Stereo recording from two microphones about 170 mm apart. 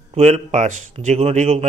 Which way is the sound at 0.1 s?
40° right (ahead or behind).